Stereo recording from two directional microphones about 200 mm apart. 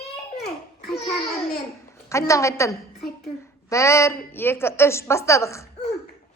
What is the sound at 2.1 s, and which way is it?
A woman's voice, 15° left (ahead or behind).